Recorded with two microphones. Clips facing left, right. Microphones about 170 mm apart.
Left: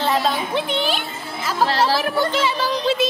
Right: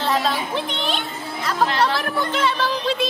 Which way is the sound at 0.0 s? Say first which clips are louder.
Left 1 dB; centre (ahead or behind).